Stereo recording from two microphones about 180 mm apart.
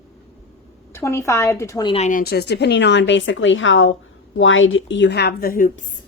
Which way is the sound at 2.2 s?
65° left (ahead or behind).